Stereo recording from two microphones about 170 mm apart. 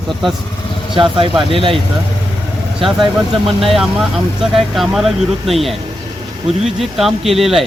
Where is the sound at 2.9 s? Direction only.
Centre (ahead or behind).